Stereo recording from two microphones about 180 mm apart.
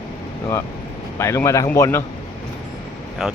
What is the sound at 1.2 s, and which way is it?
Speech, 15° left (ahead or behind).